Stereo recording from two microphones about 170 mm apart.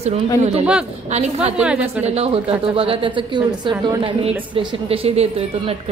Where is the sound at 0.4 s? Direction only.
40° right (ahead or behind).